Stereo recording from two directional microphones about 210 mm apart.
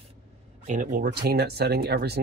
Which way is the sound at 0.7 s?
40° right (ahead or behind).